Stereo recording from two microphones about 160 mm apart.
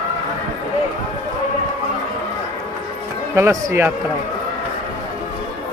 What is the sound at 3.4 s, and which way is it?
Speech, 20° right (ahead or behind).